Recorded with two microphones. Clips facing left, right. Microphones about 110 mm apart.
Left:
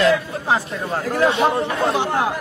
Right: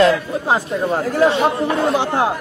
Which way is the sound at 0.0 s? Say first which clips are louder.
Right 3 dB; 25° right (ahead or behind).